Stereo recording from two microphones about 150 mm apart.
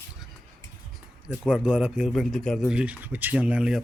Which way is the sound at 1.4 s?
5° right (ahead or behind).